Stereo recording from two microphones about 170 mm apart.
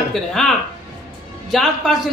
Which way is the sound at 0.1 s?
Centre (ahead or behind).